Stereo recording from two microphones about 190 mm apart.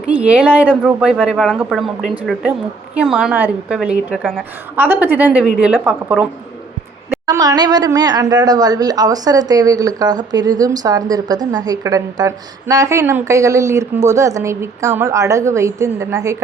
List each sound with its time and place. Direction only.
0.1 s a woman's voice: 5° right (ahead or behind)
4.8 s a woman's voice: 10° right (ahead or behind)
7.3 s a woman's voice: 20° right (ahead or behind)